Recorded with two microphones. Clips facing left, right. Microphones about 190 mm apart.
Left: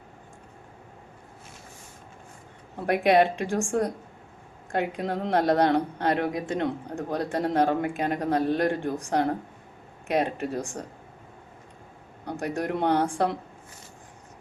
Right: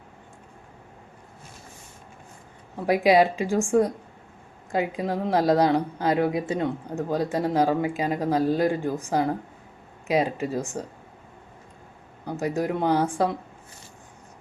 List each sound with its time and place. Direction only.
3.1 s speech: 5° right (ahead or behind)
12.2 s speech: 5° right (ahead or behind)